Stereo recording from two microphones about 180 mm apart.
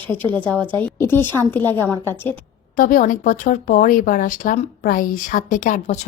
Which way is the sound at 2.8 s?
50° left (ahead or behind).